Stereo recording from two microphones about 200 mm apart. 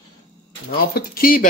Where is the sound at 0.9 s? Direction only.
45° left (ahead or behind).